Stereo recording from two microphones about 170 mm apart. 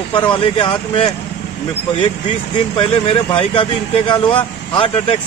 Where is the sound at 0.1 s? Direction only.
30° left (ahead or behind).